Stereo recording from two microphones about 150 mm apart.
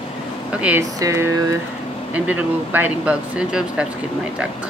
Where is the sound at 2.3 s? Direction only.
10° right (ahead or behind).